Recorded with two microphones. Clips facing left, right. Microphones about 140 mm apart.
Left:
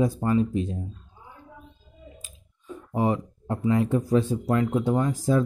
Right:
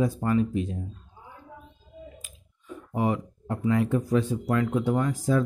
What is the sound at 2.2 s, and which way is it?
Speech, 30° left (ahead or behind).